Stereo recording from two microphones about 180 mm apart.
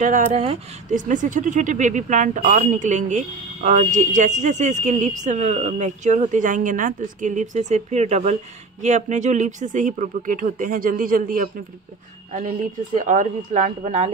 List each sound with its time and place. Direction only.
0.0 s speech: 45° right (ahead or behind)